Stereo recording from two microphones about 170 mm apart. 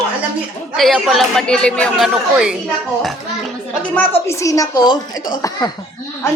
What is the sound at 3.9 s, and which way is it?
A woman's voice, 10° left (ahead or behind).